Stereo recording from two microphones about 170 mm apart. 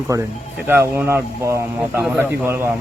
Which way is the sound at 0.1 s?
20° right (ahead or behind).